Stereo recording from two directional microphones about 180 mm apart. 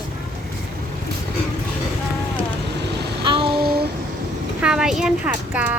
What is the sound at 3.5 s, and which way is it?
Child singing, 60° right (ahead or behind).